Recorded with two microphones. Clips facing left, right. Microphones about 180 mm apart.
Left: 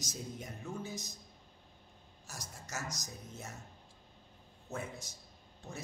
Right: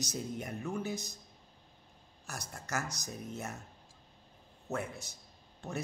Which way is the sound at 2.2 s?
65° right (ahead or behind).